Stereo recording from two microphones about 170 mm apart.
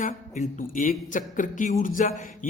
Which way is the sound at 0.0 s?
45° left (ahead or behind).